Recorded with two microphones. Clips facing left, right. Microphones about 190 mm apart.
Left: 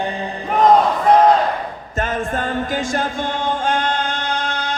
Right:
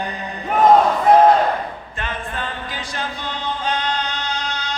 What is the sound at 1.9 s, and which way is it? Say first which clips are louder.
Music: left 8 dB; 45° left (ahead or behind).